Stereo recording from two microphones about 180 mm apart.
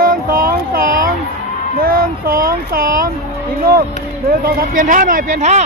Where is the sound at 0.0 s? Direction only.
50° right (ahead or behind).